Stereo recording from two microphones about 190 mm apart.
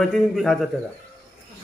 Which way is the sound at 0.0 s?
Centre (ahead or behind).